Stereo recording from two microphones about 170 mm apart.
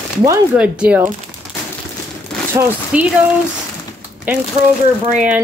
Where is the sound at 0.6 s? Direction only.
10° right (ahead or behind).